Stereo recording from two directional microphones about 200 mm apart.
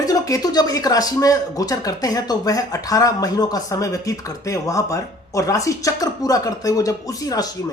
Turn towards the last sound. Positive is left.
turn(degrees=20)  # may be behind; listen again after turning